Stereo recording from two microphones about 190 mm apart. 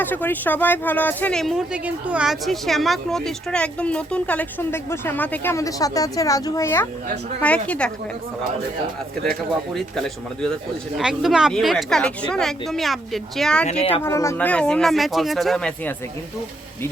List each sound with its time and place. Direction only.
0.0 s speech: 10° left (ahead or behind)
9.7 s speech: centre (ahead or behind)
13.7 s speech: 30° left (ahead or behind)
14.0 s speech: 15° left (ahead or behind)